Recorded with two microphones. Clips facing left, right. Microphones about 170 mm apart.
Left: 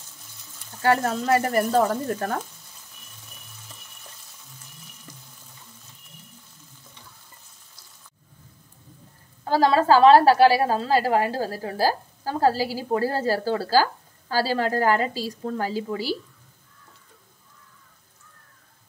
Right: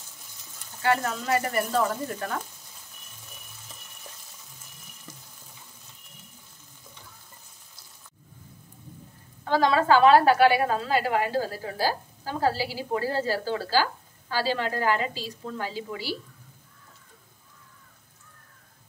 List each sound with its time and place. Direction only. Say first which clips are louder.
0.8 s a woman's voice: left 4 dB; 40° left (ahead or behind)
9.4 s a woman's voice: left 3 dB; 35° left (ahead or behind)